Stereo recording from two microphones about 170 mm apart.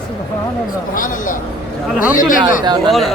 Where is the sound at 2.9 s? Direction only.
Centre (ahead or behind).